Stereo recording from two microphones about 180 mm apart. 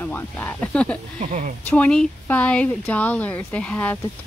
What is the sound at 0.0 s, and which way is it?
Speech, 10° left (ahead or behind).